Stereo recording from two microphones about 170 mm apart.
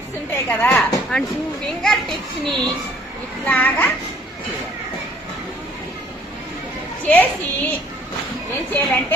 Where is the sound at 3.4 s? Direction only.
10° left (ahead or behind).